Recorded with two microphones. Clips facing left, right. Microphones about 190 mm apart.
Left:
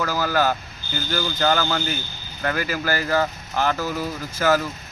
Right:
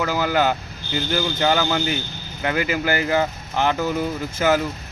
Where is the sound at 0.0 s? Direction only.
20° right (ahead or behind).